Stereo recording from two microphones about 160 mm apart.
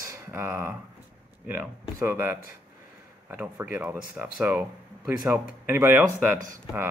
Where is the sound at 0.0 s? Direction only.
15° right (ahead or behind).